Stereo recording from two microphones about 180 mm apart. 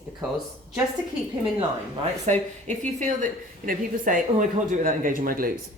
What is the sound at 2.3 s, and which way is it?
Speech, 40° right (ahead or behind).